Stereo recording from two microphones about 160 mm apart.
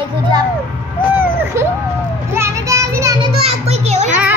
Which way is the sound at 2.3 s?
20° right (ahead or behind).